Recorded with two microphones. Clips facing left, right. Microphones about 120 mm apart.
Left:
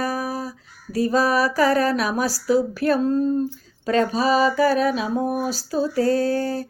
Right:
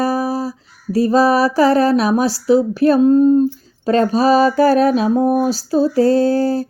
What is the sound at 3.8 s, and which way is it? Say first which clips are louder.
Mantra: right 6 dB; 35° right (ahead or behind).